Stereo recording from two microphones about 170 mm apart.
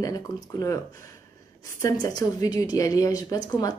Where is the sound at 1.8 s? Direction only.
20° left (ahead or behind).